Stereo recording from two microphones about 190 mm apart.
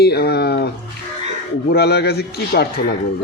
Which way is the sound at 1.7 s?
60° left (ahead or behind).